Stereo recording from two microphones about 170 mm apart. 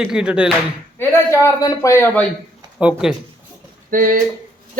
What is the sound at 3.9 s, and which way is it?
Speech, 55° right (ahead or behind).